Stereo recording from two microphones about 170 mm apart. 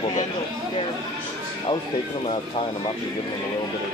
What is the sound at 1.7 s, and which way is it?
Speech, 25° left (ahead or behind).